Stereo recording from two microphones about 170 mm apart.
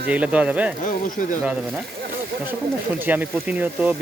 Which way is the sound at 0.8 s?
50° left (ahead or behind).